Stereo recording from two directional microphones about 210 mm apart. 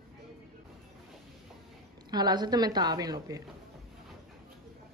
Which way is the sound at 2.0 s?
20° right (ahead or behind).